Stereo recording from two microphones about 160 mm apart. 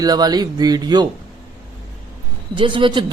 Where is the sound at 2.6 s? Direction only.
30° right (ahead or behind).